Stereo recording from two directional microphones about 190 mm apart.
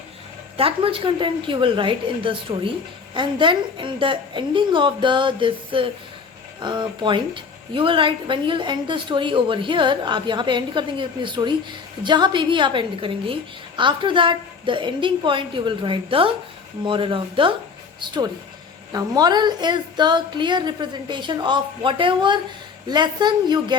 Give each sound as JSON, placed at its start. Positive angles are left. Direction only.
{"t": 0.5, "sound": "a woman's voice", "side_deg": -30}